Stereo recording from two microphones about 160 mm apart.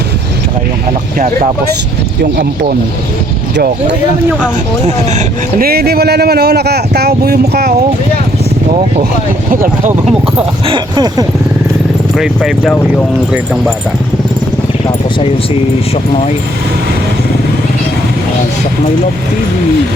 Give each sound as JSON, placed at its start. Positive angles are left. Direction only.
{"t": 2.2, "sound": "speech", "side_deg": -90}
{"t": 5.1, "sound": "speech", "side_deg": -65}
{"t": 10.7, "sound": "speech", "side_deg": -25}
{"t": 12.1, "sound": "speech", "side_deg": 0}